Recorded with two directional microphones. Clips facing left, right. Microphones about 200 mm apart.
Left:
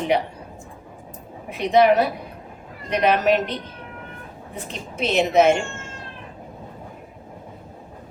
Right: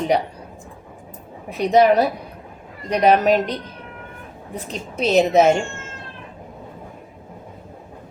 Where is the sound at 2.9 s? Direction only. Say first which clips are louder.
Right 3 dB; 40° right (ahead or behind).